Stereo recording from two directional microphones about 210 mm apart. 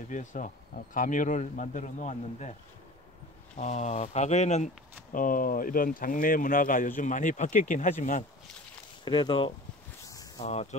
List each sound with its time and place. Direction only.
0.1 s speech: 35° left (ahead or behind)
3.5 s speech: 35° left (ahead or behind)
9.0 s speech: 20° left (ahead or behind)